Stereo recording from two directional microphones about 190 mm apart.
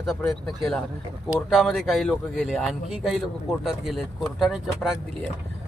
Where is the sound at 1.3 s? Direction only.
Centre (ahead or behind).